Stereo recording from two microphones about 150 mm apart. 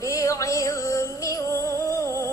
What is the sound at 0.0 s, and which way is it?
Music, 20° left (ahead or behind).